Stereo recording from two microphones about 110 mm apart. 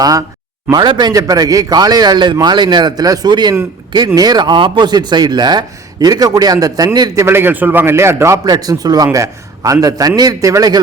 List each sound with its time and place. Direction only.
0.0 s speech: 35° right (ahead or behind)
7.3 s a man's voice: 20° right (ahead or behind)